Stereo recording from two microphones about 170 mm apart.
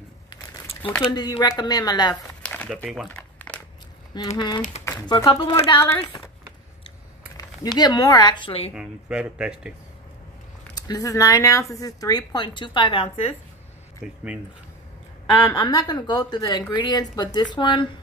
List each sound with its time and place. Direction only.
0.3 s a sound: 30° left (ahead or behind)
1.1 s speech: 25° left (ahead or behind)
2.4 s crumpling: 10° left (ahead or behind)
4.1 s speech: 25° left (ahead or behind)
7.3 s speech: 20° left (ahead or behind)
8.7 s speech: 5° right (ahead or behind)
10.7 s speech: 20° left (ahead or behind)
14.0 s speech: 5° right (ahead or behind)
15.6 s speech: 25° left (ahead or behind)